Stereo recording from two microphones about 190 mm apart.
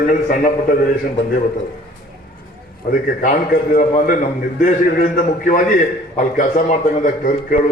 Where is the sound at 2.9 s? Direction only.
50° left (ahead or behind).